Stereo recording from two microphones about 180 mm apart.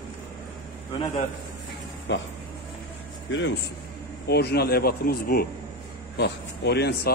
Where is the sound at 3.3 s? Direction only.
90° left.